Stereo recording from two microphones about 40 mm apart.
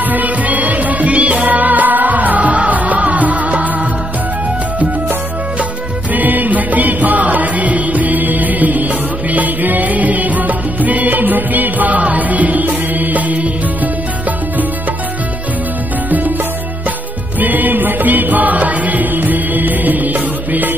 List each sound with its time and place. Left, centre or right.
0.0 s music: right
6.1 s music: right
17.4 s music: right